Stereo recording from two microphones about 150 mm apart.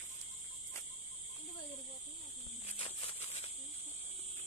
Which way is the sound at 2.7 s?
40° left (ahead or behind).